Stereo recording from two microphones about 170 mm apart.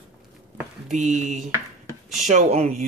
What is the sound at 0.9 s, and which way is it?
A woman's voice, 45° right (ahead or behind).